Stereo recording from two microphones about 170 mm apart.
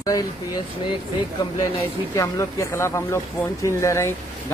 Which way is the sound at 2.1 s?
20° left (ahead or behind).